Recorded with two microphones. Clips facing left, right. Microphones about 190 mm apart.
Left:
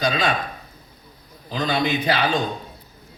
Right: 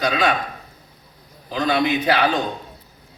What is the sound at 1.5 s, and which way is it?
Speech, 60° right (ahead or behind).